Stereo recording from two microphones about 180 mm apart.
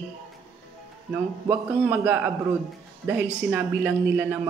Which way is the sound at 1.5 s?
10° right (ahead or behind).